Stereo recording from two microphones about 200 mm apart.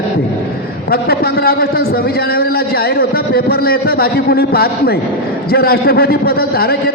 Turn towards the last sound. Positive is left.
turn(degrees=50)  # may be behind; listen again after turning